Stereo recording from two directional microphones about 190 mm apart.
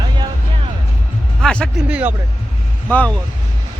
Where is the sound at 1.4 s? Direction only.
5° left (ahead or behind).